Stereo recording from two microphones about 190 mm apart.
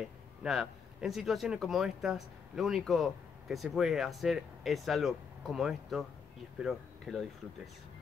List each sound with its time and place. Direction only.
0.4 s speech: centre (ahead or behind)